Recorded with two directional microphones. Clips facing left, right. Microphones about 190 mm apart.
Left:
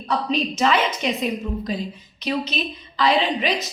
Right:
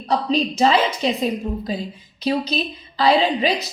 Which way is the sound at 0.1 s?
35° right (ahead or behind).